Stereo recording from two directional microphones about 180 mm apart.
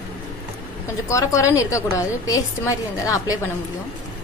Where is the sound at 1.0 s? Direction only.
15° left (ahead or behind).